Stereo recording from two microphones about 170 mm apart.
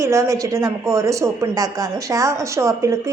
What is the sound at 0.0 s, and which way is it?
A woman's voice, 15° right (ahead or behind).